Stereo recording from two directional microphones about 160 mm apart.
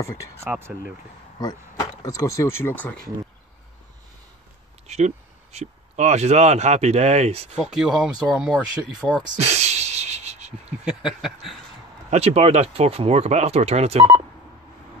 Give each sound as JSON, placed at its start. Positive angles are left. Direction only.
{"t": 0.4, "sound": "speech", "side_deg": -15}
{"t": 1.4, "sound": "speech", "side_deg": 20}
{"t": 4.8, "sound": "speech", "side_deg": -45}
{"t": 7.5, "sound": "speech", "side_deg": -5}
{"t": 9.4, "sound": "sneeze", "side_deg": -45}
{"t": 10.9, "sound": "speech", "side_deg": 0}
{"t": 12.1, "sound": "speech", "side_deg": -40}